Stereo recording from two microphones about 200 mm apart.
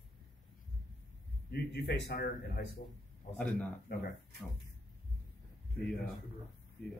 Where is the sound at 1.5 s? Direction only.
55° left (ahead or behind).